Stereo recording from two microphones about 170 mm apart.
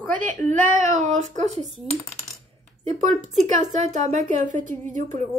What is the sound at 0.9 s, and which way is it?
Speech, 45° right (ahead or behind).